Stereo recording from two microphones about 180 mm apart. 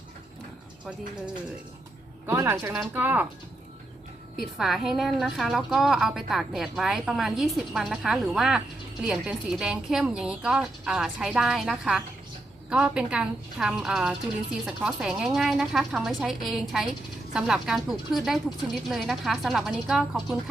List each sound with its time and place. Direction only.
2.2 s speech: 10° right (ahead or behind)
4.5 s a woman's voice: centre (ahead or behind)